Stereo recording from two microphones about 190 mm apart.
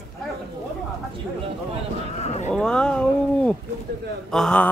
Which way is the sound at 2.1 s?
35° left (ahead or behind).